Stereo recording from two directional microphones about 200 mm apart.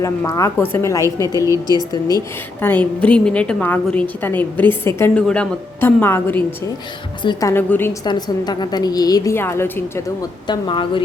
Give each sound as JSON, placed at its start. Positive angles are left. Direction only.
{"t": 0.0, "sound": "a woman's voice", "side_deg": 15}
{"t": 8.0, "sound": "a woman's voice", "side_deg": 20}
{"t": 10.4, "sound": "a woman's voice", "side_deg": 25}